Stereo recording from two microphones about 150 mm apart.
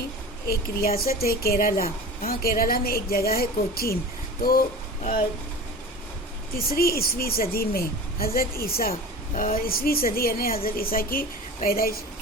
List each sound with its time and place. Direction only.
0.4 s speech: 85° left
6.6 s speech: 80° left
8.9 s a woman's voice: 60° left (ahead or behind); by 11.9 s 80° left